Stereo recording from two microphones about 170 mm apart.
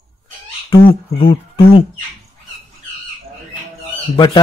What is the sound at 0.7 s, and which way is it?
Speech, 30° left (ahead or behind).